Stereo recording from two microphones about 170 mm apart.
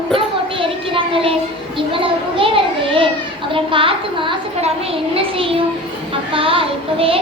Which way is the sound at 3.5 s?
30° right (ahead or behind).